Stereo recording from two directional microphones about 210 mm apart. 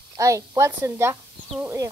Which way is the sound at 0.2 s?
15° right (ahead or behind).